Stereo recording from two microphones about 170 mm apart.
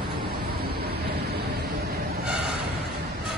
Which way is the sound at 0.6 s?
65° right (ahead or behind).